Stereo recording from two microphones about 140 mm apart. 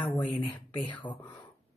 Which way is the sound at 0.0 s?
10° left (ahead or behind).